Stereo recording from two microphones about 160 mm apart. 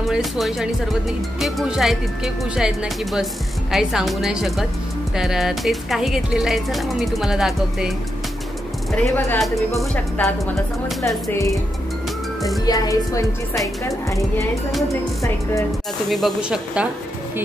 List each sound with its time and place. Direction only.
0.1 s speech: centre (ahead or behind)
8.9 s speech: 10° left (ahead or behind)
11.2 s speech: 20° left (ahead or behind)
12.6 s speech: 20° left (ahead or behind)
16.1 s speech: centre (ahead or behind)